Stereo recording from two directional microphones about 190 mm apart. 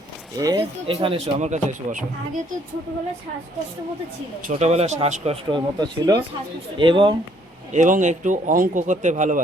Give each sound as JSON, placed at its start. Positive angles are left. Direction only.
{"t": 0.3, "sound": "speech", "side_deg": -20}
{"t": 0.9, "sound": "speech", "side_deg": -30}
{"t": 4.4, "sound": "speech", "side_deg": -35}
{"t": 7.7, "sound": "speech", "side_deg": -40}